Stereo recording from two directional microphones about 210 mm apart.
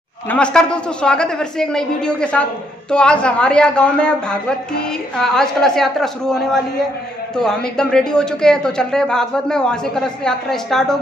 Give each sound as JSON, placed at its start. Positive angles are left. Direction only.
{"t": 0.3, "sound": "speech", "side_deg": 5}